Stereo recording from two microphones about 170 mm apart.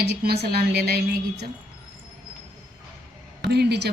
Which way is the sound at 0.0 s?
70° right (ahead or behind).